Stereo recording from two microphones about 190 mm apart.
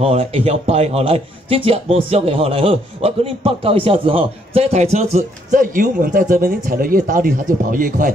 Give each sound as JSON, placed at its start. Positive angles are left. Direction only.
{"t": 0.0, "sound": "a man's voice", "side_deg": -30}